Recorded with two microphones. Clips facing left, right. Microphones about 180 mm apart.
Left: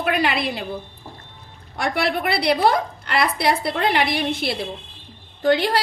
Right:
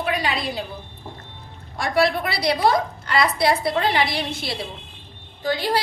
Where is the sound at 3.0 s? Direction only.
60° left (ahead or behind).